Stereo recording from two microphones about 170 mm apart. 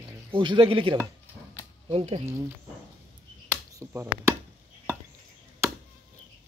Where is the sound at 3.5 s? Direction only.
15° right (ahead or behind).